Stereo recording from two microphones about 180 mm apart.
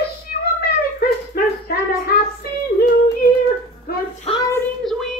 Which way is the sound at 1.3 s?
55° left (ahead or behind).